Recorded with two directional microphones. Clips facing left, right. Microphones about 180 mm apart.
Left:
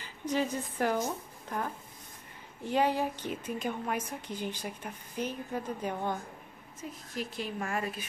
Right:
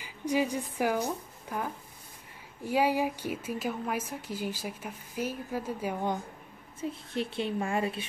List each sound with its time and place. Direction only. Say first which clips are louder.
0.0 s a woman's voice: right 3 dB; 10° right (ahead or behind)
6.8 s a woman's voice: right 5 dB; 30° right (ahead or behind)